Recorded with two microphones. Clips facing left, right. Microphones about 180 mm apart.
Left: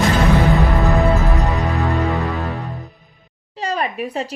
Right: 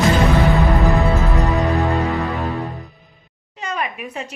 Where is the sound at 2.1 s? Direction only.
Centre (ahead or behind).